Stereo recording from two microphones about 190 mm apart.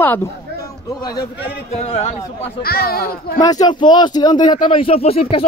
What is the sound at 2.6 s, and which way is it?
Speech, 55° left (ahead or behind).